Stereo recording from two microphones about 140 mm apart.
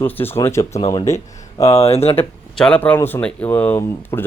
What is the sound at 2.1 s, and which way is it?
Speech, 10° left (ahead or behind).